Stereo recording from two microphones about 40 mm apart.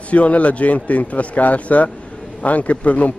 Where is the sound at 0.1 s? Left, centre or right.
Left.